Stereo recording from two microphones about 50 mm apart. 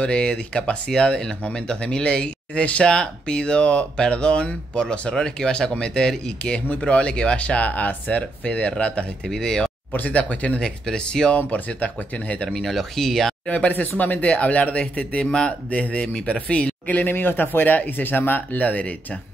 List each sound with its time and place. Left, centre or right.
0.0 s speech: centre
9.9 s speech: left
11.3 s speech: left
12.4 s speech: centre
13.7 s speech: left